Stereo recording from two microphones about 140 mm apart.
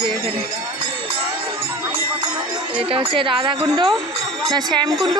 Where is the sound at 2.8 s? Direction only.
40° right (ahead or behind).